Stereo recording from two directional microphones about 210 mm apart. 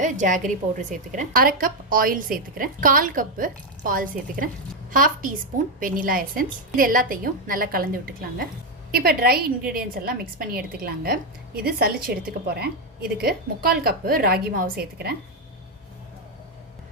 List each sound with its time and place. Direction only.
0.0 s a woman's voice: 35° right (ahead or behind)